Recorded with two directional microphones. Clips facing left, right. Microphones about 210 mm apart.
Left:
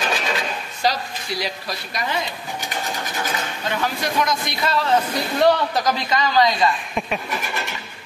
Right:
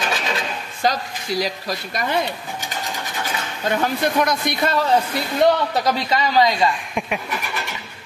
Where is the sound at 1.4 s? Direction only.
50° right (ahead or behind).